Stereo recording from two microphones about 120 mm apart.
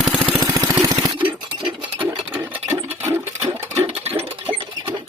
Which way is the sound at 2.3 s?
20° right (ahead or behind).